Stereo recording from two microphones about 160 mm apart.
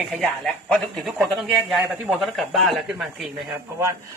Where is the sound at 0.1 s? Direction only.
5° left (ahead or behind).